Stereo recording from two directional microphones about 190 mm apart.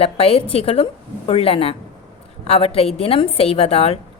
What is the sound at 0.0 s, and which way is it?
A woman's voice, 30° left (ahead or behind).